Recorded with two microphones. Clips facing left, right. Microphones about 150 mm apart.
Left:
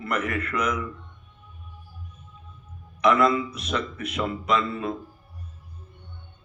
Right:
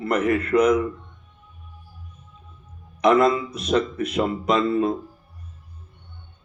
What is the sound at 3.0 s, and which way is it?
Speech, 35° right (ahead or behind).